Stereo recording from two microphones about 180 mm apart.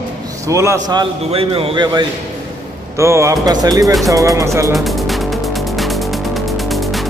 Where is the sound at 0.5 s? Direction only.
15° right (ahead or behind).